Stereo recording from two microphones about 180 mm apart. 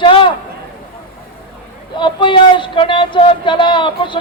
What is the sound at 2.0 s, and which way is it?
Speech, 25° left (ahead or behind).